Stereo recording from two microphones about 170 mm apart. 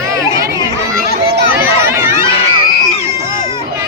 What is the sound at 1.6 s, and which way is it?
Run, 15° right (ahead or behind).